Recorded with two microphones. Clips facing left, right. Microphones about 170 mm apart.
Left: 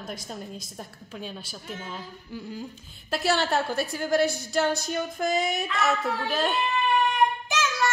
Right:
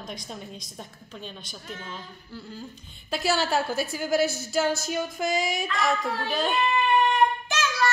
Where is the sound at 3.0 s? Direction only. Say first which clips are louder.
Left 1 dB; centre (ahead or behind).